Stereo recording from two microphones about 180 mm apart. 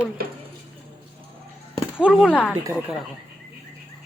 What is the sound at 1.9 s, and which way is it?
Speech, 5° right (ahead or behind).